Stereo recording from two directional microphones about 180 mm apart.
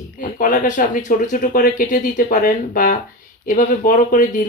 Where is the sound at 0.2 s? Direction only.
45° left (ahead or behind).